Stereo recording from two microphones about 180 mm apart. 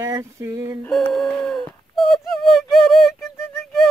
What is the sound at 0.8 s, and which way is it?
Speech, centre (ahead or behind).